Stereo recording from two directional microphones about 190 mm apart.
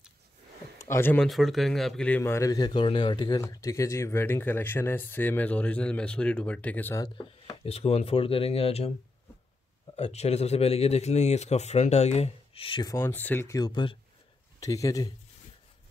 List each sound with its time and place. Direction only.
0.7 s a man's voice: 15° left (ahead or behind)
7.2 s speech: 30° left (ahead or behind)
9.9 s speech: 35° left (ahead or behind)
12.9 s a man's voice: 10° left (ahead or behind)